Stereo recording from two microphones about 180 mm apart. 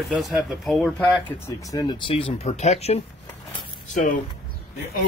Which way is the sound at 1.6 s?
20° left (ahead or behind).